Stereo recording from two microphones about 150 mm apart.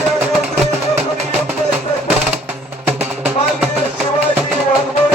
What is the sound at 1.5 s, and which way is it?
Music, 10° right (ahead or behind).